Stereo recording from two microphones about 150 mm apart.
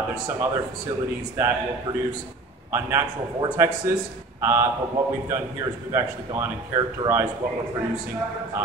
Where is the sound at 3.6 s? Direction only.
15° right (ahead or behind).